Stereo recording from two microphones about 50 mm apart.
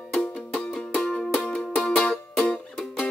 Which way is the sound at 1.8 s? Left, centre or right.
Left.